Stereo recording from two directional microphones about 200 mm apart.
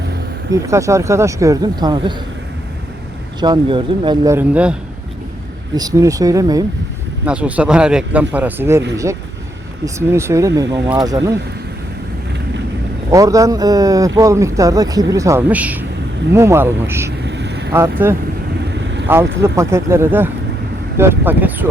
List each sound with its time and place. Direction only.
0.5 s speech: 15° right (ahead or behind)
3.4 s speech: 25° right (ahead or behind); by 4.8 s 5° right (ahead or behind)
5.7 s speech: 15° right (ahead or behind)
7.3 s speech: 5° right (ahead or behind)
9.8 s speech: 15° right (ahead or behind)
13.1 s speech: 15° right (ahead or behind)
17.1 s vehicle: 60° right (ahead or behind)
17.7 s speech: 10° right (ahead or behind)